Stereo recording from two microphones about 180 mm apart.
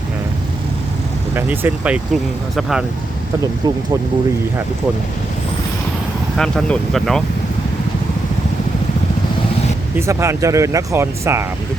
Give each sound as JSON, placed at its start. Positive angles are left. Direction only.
{"t": 1.4, "sound": "speech", "side_deg": -10}
{"t": 6.3, "sound": "speech", "side_deg": 5}
{"t": 10.1, "sound": "speech", "side_deg": -15}